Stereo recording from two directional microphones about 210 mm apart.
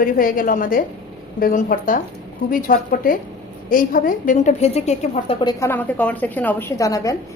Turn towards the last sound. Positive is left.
turn(degrees=15)  # may be behind; listen again after turning